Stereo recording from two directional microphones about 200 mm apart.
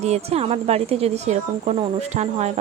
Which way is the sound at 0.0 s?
30° right (ahead or behind).